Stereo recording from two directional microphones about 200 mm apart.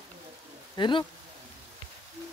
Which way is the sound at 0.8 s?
25° left (ahead or behind).